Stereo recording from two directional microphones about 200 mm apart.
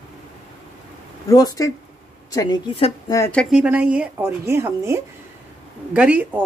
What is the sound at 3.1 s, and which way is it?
A woman's voice, 10° left (ahead or behind).